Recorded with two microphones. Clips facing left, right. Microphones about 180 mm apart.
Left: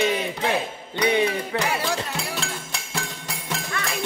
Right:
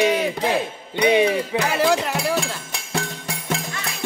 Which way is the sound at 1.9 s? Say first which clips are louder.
Right 7 dB; 90° right.